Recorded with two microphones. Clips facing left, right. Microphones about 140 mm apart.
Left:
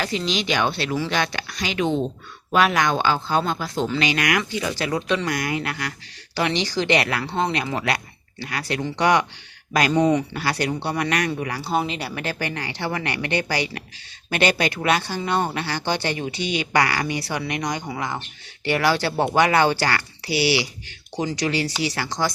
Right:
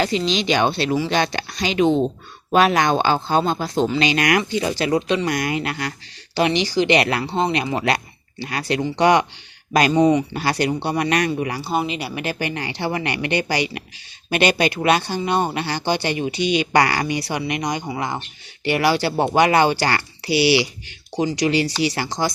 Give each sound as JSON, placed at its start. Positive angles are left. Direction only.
{"t": 0.0, "sound": "speech", "side_deg": -25}
{"t": 9.9, "sound": "speech", "side_deg": -5}
{"t": 10.3, "sound": "speech", "side_deg": -25}
{"t": 11.6, "sound": "speech", "side_deg": -5}